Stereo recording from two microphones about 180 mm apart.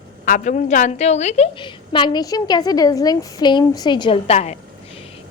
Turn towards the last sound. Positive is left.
turn(degrees=35)  # may be behind; listen again after turning